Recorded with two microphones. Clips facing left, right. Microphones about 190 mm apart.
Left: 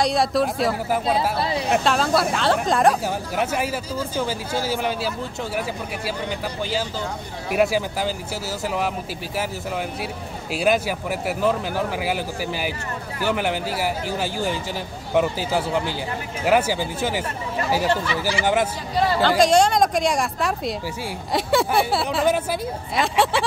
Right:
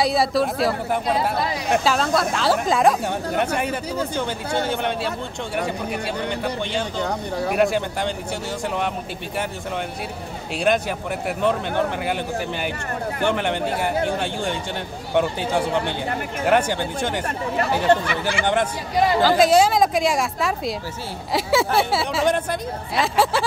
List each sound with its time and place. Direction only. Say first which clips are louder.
0.0 s speech: even; centre (ahead or behind)
1.0 s speech: right 1 dB; 30° left (ahead or behind)
1.7 s speech: even; centre (ahead or behind)
10.5 s speech: even; 5° left (ahead or behind)
18.4 s speech: even; 5° left (ahead or behind)
18.9 s speech: right 1 dB; 10° right (ahead or behind)